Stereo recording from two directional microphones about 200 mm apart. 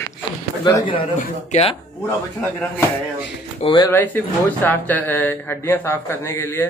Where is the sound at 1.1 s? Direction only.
35° left (ahead or behind).